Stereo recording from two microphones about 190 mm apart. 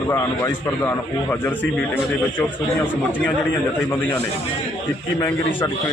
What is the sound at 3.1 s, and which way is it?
Speech, 10° left (ahead or behind).